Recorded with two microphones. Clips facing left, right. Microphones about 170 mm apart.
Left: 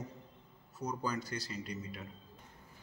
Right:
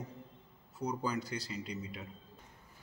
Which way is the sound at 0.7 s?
15° right (ahead or behind).